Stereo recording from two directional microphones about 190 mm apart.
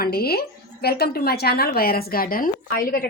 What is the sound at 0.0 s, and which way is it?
Speech, 55° left (ahead or behind).